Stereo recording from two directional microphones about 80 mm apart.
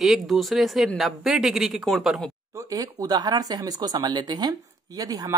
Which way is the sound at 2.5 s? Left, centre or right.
Right.